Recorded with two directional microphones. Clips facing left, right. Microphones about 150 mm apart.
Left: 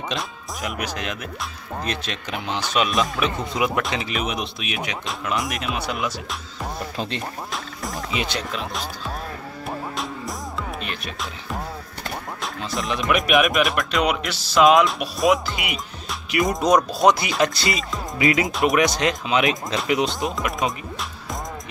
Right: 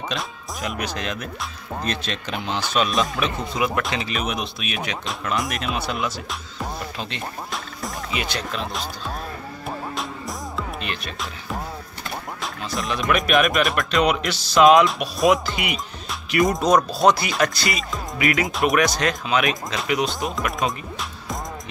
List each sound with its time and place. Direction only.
0.7 s speech: 10° left (ahead or behind)
5.2 s speech: centre (ahead or behind)
5.9 s speech: 15° left (ahead or behind)
7.5 s frog: centre (ahead or behind)
8.2 s speech: 20° left (ahead or behind)
10.8 s speech: centre (ahead or behind)
12.8 s speech: 20° left (ahead or behind)
13.3 s speech: centre (ahead or behind)
16.6 s speech: 15° left (ahead or behind)
18.5 s speech: centre (ahead or behind)
18.8 s speech: 20° left (ahead or behind)